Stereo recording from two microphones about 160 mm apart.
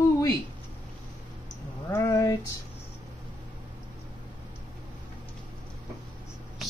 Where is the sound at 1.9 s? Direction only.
20° left (ahead or behind).